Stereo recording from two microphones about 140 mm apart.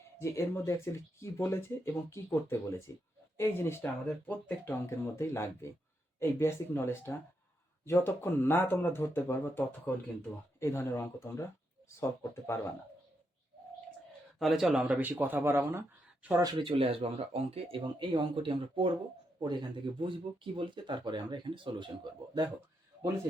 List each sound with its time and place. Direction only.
0.2 s speech: 20° left (ahead or behind)
14.3 s speech: centre (ahead or behind); by 15.8 s 15° right (ahead or behind)
16.4 s speech: 30° right (ahead or behind)